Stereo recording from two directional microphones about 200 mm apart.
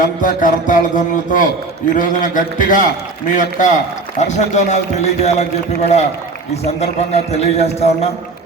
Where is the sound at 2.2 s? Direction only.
40° left (ahead or behind).